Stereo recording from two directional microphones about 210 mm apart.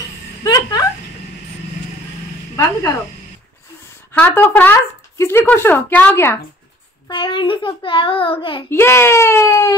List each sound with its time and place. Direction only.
0.4 s a sound: 20° left (ahead or behind)
4.1 s speech: 10° left (ahead or behind)
7.1 s a child's voice: 25° left (ahead or behind)
8.6 s speech: 10° left (ahead or behind)